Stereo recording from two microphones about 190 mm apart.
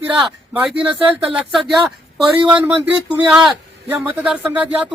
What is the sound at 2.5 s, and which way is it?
A man's voice, 5° right (ahead or behind).